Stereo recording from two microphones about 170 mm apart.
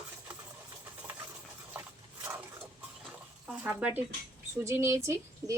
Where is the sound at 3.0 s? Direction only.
5° right (ahead or behind).